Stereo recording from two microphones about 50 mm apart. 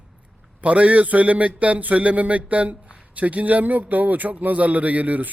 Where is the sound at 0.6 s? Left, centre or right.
Right.